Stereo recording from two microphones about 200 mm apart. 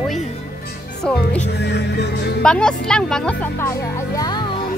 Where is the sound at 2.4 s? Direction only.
5° left (ahead or behind).